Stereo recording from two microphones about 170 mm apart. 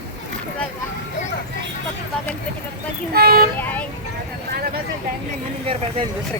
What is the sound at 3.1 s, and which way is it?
Vehicle, 65° right (ahead or behind).